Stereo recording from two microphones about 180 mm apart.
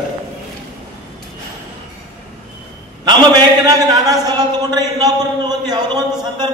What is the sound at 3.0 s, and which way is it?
A man's voice, 20° right (ahead or behind).